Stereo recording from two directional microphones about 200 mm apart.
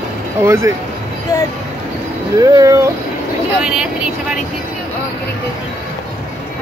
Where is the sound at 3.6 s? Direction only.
5° right (ahead or behind).